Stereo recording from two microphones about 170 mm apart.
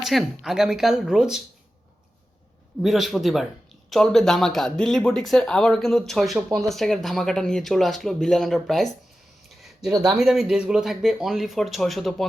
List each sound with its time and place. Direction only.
0.0 s speech: centre (ahead or behind)
2.8 s speech: centre (ahead or behind)
9.6 s a sound: centre (ahead or behind)
10.1 s speech: 5° right (ahead or behind)